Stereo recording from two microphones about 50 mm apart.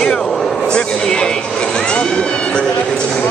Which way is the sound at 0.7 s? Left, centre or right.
Centre.